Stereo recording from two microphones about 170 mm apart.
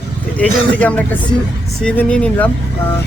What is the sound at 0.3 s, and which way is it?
Speech, 10° left (ahead or behind).